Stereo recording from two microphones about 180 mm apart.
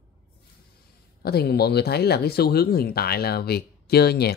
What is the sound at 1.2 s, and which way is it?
Speech, 60° left (ahead or behind).